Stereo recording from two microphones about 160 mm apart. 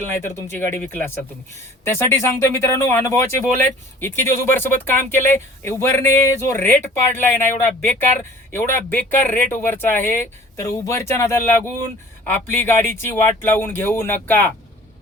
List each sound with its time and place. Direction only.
0.2 s speech: 15° left (ahead or behind)